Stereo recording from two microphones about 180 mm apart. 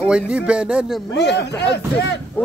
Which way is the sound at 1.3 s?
70° left (ahead or behind).